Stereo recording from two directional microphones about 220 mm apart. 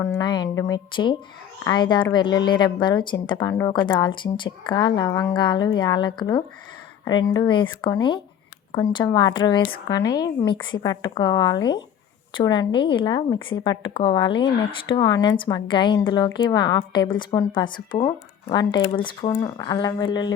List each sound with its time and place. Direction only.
0.0 s speech: 15° left (ahead or behind)